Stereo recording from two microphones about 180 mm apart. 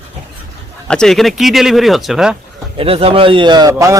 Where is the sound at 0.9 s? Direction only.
5° left (ahead or behind).